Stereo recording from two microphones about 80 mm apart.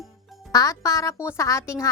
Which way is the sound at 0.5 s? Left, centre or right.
Left.